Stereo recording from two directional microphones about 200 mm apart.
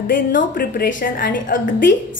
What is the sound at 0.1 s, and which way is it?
A woman's voice, 45° left (ahead or behind).